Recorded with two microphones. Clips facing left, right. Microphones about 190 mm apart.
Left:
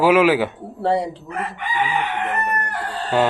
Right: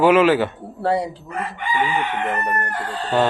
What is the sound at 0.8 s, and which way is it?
Speech, centre (ahead or behind).